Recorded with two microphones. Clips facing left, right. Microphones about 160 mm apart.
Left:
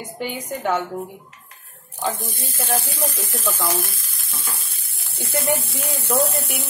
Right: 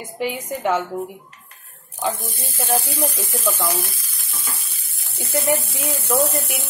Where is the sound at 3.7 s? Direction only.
50° left (ahead or behind).